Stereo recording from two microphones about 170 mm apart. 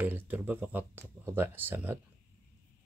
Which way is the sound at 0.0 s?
10° right (ahead or behind).